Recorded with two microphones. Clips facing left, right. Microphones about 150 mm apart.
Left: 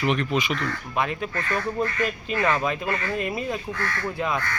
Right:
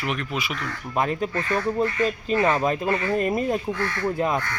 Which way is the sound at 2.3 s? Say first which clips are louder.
Right 3 dB; 25° right (ahead or behind).